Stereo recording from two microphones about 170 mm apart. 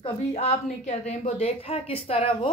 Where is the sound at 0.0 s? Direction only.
40° left (ahead or behind).